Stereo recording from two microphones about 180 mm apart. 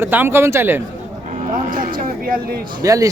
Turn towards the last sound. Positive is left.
turn(degrees=-20)  # may be behind; listen again after turning